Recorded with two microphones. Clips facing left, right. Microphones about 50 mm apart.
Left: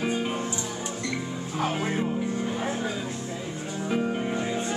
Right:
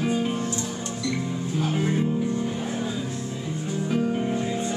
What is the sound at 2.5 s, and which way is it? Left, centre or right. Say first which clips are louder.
Music: even; left.